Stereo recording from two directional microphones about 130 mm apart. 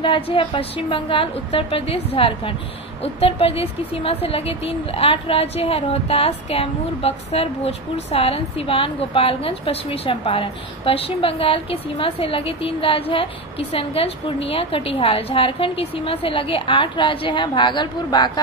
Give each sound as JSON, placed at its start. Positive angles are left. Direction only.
{"t": 0.0, "sound": "a woman's voice", "side_deg": 40}